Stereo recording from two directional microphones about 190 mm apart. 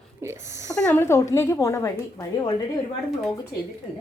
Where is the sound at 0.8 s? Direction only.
15° left (ahead or behind).